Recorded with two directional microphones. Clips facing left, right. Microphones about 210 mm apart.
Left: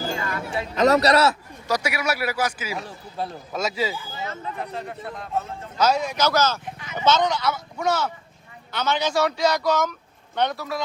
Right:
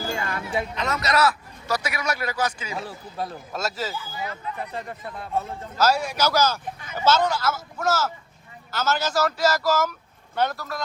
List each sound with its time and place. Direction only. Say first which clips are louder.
0.4 s a man's voice: left 11 dB; 40° left (ahead or behind)
1.6 s a man's voice: left 2 dB; 10° left (ahead or behind)
3.9 s speech: even; 25° left (ahead or behind)
5.7 s a man's voice: left 1 dB; 5° right (ahead or behind)